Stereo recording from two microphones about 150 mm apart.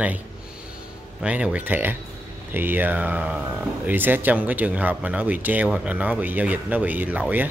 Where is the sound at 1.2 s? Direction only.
5° right (ahead or behind).